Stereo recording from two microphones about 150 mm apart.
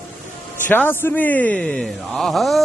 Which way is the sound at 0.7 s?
15° left (ahead or behind).